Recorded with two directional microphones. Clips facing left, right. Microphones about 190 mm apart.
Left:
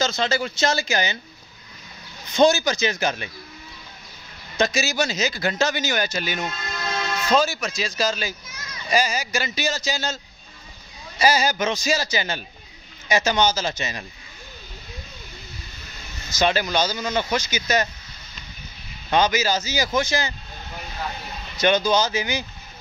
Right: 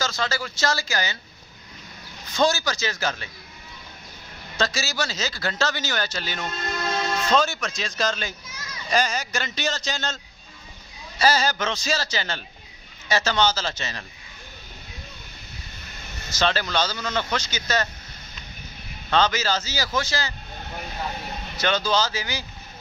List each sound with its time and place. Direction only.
0.0 s speech: 20° left (ahead or behind)
2.2 s speech: 20° left (ahead or behind)
4.6 s speech: 15° left (ahead or behind)
11.1 s speech: 10° left (ahead or behind)
16.3 s speech: 15° left (ahead or behind)
19.0 s speech: 15° left (ahead or behind)
21.5 s speech: 15° left (ahead or behind)